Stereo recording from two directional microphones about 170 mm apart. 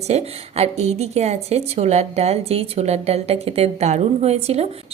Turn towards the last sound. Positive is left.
turn(degrees=-40)  # may be behind; listen again after turning